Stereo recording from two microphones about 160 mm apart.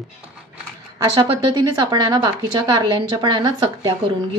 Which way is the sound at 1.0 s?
30° right (ahead or behind).